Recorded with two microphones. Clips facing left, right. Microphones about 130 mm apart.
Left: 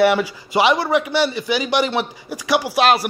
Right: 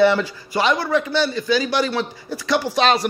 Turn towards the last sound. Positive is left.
turn(degrees=5)  # may be behind; listen again after turning